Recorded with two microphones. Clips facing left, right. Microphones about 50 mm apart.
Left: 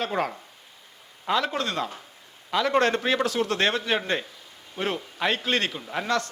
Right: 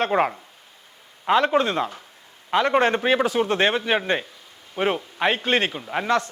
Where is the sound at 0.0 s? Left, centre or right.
Right.